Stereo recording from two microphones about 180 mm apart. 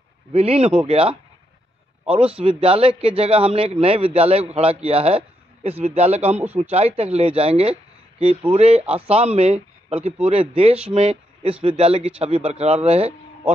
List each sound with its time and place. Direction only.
0.3 s a man's voice: 35° right (ahead or behind)